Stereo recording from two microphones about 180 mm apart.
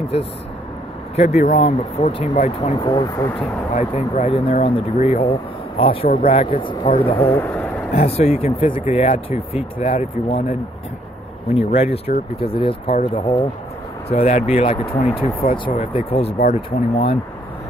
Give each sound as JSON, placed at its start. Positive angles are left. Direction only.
{"t": 0.1, "sound": "speech", "side_deg": 35}
{"t": 2.7, "sound": "speech", "side_deg": 20}
{"t": 3.7, "sound": "speech", "side_deg": 40}
{"t": 7.2, "sound": "speech", "side_deg": 15}
{"t": 7.9, "sound": "speech", "side_deg": 35}
{"t": 11.7, "sound": "speech", "side_deg": 35}